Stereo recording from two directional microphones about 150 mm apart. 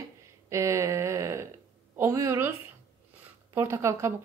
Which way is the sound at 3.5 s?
20° right (ahead or behind).